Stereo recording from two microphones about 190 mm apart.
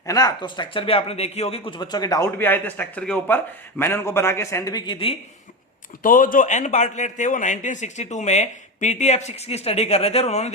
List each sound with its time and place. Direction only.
0.0 s speech: 20° left (ahead or behind)
6.0 s a man's voice: 45° left (ahead or behind)